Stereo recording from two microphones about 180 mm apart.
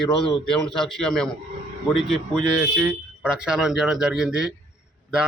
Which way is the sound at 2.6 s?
20° right (ahead or behind).